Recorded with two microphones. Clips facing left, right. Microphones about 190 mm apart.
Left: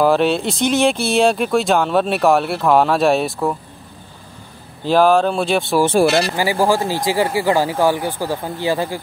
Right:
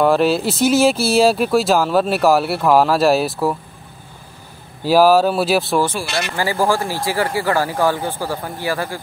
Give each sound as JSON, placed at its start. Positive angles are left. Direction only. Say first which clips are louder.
{"t": 0.0, "sound": "speech", "louder": "even", "side_deg": 0}
{"t": 4.8, "sound": "speech", "louder": "right 1 dB", "side_deg": -5}
{"t": 6.3, "sound": "speech", "louder": "left 2 dB", "side_deg": 15}